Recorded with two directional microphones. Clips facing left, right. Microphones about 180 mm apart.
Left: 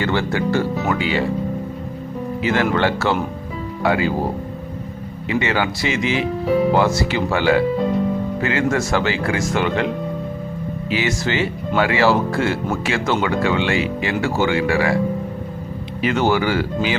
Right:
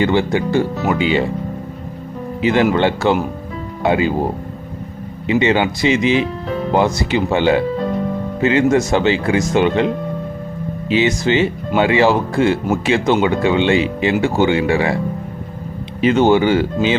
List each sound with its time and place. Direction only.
0.0 s speech: 15° right (ahead or behind)
2.4 s speech: 20° right (ahead or behind)
5.3 s speech: 20° right (ahead or behind)
16.0 s speech: 20° right (ahead or behind)